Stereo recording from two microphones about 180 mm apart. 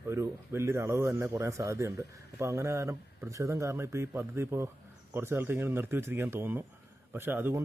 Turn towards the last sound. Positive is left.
turn(degrees=-10)  # may be behind; listen again after turning